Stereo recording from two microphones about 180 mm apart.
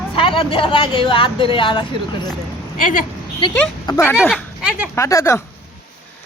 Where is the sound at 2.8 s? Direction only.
50° left (ahead or behind).